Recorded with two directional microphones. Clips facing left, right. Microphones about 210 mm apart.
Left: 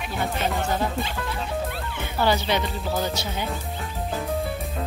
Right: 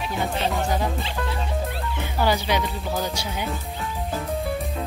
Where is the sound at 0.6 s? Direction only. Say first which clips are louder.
Right 1 dB; 15° right (ahead or behind).